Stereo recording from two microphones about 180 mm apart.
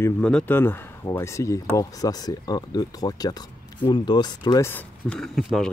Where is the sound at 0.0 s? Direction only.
5° left (ahead or behind).